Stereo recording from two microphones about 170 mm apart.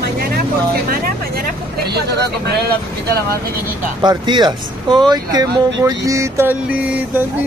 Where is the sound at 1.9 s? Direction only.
75° right (ahead or behind).